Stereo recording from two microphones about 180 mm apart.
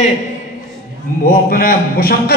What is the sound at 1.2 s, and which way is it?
A man's voice, 55° left (ahead or behind).